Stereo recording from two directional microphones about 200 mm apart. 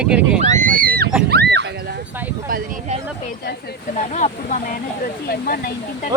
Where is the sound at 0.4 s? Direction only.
40° right (ahead or behind).